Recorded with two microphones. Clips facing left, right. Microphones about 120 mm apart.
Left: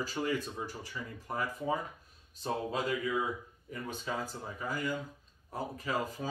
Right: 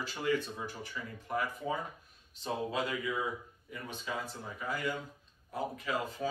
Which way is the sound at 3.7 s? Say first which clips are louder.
Left 3 dB; 40° left (ahead or behind).